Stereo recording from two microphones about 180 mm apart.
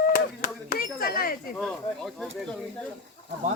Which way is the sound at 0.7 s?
55° left (ahead or behind).